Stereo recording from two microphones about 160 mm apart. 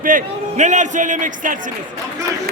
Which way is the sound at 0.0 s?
50° right (ahead or behind).